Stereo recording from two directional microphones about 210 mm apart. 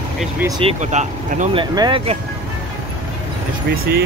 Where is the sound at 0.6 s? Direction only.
30° right (ahead or behind).